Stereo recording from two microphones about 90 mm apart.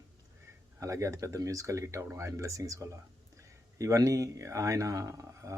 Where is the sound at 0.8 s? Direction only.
35° right (ahead or behind).